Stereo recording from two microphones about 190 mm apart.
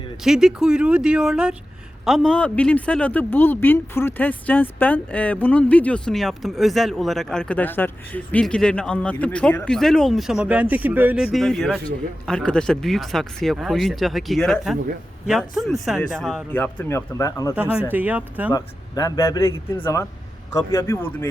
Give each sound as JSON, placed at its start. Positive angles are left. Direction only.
{"t": 0.2, "sound": "speech", "side_deg": 0}
{"t": 17.5, "sound": "speech", "side_deg": -10}
{"t": 18.5, "sound": "speech", "side_deg": 20}